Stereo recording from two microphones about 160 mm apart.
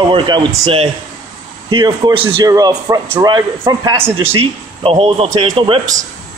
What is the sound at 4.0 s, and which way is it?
Speech, 15° right (ahead or behind).